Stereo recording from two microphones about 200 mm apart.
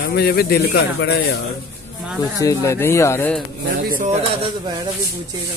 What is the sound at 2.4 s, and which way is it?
Speech, 15° left (ahead or behind).